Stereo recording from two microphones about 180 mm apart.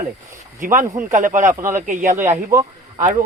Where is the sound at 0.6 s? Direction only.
45° right (ahead or behind).